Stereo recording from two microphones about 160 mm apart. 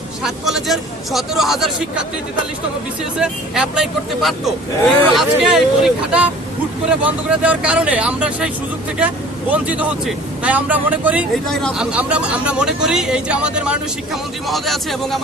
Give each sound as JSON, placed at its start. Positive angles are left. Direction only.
{"t": 0.2, "sound": "speech", "side_deg": 0}
{"t": 3.0, "sound": "speech", "side_deg": -5}
{"t": 11.4, "sound": "speech", "side_deg": 5}